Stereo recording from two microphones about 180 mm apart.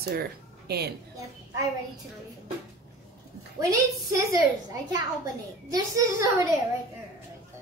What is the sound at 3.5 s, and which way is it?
A child's voice, 20° right (ahead or behind).